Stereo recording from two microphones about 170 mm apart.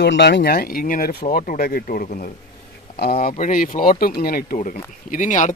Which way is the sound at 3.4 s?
55° left (ahead or behind).